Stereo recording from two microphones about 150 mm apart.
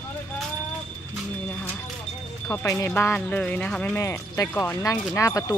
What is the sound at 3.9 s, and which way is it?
Speech, 20° left (ahead or behind).